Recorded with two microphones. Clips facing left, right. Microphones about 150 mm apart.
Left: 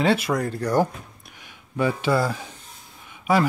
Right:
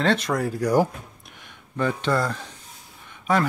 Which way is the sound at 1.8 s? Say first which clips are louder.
Left 2 dB; 5° left (ahead or behind).